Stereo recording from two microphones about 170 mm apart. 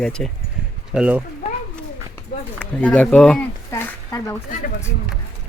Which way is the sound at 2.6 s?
10° left (ahead or behind).